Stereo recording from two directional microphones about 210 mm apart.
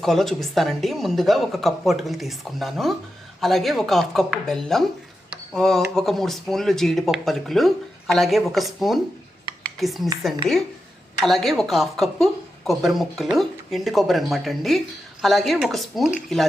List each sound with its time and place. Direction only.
0.0 s speech: centre (ahead or behind)
11.2 s speech: centre (ahead or behind)